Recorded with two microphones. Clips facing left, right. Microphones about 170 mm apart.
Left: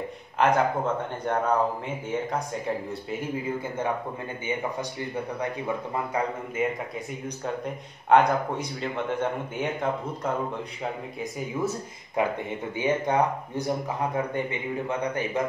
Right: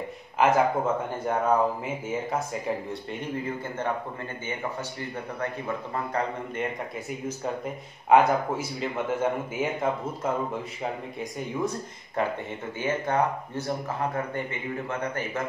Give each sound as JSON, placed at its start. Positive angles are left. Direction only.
{"t": 0.4, "sound": "speech", "side_deg": -5}
{"t": 6.1, "sound": "speech", "side_deg": 5}
{"t": 12.2, "sound": "speech", "side_deg": 15}